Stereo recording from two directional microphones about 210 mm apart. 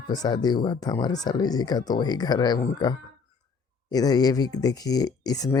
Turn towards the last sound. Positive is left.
turn(degrees=20)  # may be behind; listen again after turning